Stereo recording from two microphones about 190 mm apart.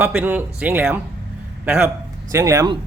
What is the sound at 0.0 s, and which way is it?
A man's voice, 10° right (ahead or behind).